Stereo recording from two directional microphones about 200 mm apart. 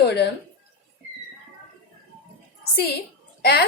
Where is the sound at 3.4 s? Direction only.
55° left (ahead or behind).